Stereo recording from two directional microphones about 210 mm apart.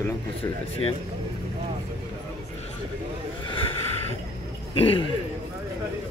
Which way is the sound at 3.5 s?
25° left (ahead or behind).